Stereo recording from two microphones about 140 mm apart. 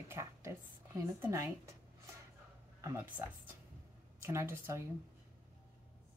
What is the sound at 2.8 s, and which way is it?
A woman's voice, 15° right (ahead or behind).